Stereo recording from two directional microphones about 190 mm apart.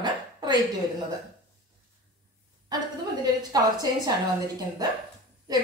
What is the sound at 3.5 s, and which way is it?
Speech, 20° right (ahead or behind).